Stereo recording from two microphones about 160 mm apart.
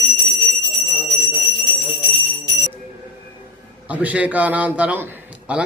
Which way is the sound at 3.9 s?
10° right (ahead or behind).